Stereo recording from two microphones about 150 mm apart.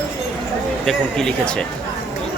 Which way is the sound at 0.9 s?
5° left (ahead or behind).